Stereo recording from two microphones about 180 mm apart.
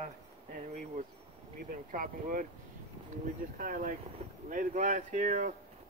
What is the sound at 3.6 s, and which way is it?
Speech, 50° right (ahead or behind).